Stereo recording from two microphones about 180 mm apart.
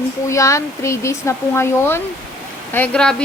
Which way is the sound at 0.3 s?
15° left (ahead or behind).